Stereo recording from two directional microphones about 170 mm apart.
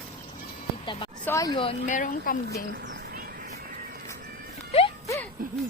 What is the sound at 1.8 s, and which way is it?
Speech, 50° left (ahead or behind).